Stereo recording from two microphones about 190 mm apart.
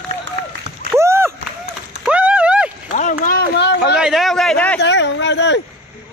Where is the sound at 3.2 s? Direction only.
50° left (ahead or behind).